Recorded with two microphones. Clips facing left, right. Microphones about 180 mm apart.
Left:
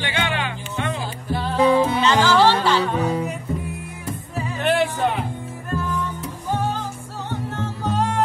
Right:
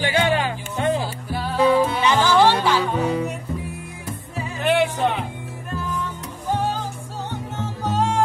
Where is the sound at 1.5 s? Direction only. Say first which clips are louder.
Even; 15° left (ahead or behind).